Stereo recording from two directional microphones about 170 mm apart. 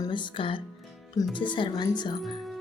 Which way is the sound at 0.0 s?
30° left (ahead or behind).